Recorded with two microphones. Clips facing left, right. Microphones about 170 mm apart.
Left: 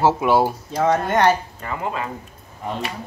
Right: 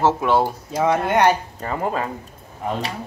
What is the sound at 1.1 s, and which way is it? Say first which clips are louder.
Speech: right 2 dB; 15° right (ahead or behind).